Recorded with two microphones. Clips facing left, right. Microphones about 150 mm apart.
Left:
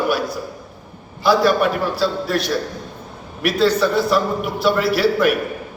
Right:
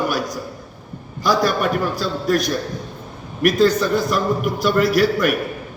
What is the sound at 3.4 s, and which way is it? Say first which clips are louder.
A man's voice: right 1 dB; 45° right (ahead or behind).